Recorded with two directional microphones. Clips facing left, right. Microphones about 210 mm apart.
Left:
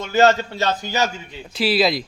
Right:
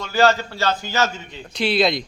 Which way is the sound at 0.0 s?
20° left (ahead or behind).